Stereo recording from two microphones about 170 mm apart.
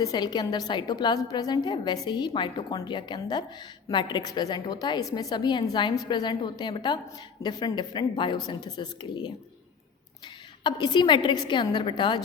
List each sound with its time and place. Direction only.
0.0 s a woman's voice: 25° left (ahead or behind)
10.6 s a woman's voice: 25° left (ahead or behind)